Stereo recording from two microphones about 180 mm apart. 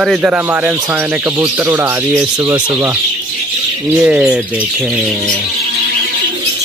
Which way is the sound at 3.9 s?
5° right (ahead or behind).